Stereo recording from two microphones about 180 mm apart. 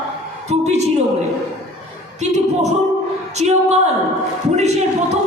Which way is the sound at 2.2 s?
40° right (ahead or behind).